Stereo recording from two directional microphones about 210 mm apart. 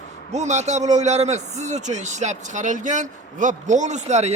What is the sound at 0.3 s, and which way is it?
Speech, 35° right (ahead or behind).